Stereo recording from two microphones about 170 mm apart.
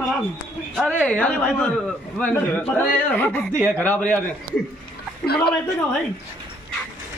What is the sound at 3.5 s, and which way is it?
Speech, 15° right (ahead or behind).